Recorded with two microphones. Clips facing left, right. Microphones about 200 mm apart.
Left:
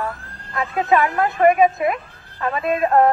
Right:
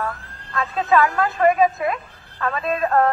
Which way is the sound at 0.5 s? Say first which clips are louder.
Even; 20° left (ahead or behind).